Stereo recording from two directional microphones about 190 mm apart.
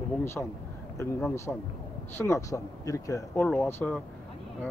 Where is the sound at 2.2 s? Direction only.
15° left (ahead or behind).